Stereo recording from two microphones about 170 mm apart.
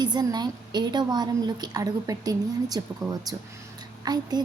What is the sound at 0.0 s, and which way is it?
A woman's voice, 25° right (ahead or behind).